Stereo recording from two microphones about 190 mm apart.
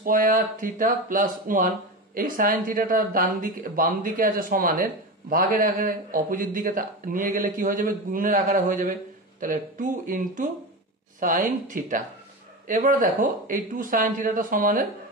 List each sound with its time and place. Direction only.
0.0 s speech: 45° right (ahead or behind)